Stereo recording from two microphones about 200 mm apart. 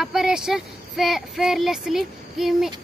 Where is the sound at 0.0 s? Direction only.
Centre (ahead or behind).